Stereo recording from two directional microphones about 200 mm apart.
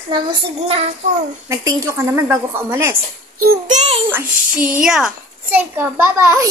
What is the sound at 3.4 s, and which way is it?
Speech, 40° right (ahead or behind).